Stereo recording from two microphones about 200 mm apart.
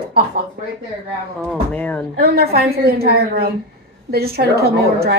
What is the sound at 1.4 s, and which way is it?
Speech, 5° left (ahead or behind).